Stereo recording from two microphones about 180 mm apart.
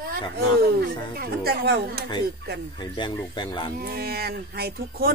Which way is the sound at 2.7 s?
25° left (ahead or behind).